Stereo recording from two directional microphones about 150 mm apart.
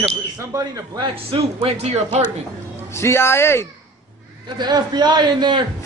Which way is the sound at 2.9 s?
15° left (ahead or behind).